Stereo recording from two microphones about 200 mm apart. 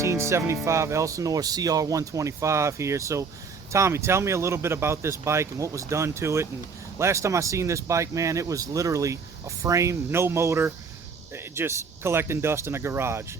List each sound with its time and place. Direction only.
0.0 s speech: 15° right (ahead or behind)